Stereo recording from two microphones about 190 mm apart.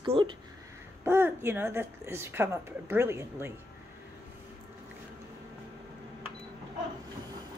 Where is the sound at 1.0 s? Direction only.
15° right (ahead or behind).